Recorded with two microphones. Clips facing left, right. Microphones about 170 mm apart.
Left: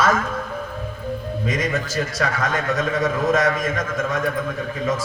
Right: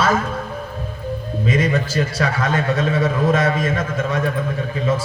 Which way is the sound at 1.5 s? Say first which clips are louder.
Right 5 dB; 30° right (ahead or behind).